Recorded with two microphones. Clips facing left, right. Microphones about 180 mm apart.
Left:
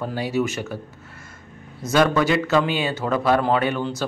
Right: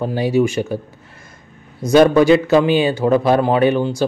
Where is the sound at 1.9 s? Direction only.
30° right (ahead or behind).